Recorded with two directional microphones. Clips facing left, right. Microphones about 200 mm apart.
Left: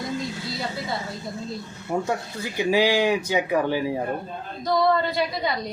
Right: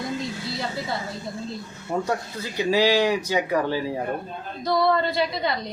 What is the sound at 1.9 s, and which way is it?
Speech, 10° left (ahead or behind).